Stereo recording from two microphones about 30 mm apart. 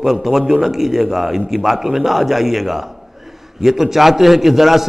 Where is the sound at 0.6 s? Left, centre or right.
Centre.